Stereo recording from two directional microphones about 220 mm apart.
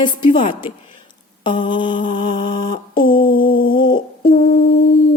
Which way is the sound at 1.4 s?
20° left (ahead or behind).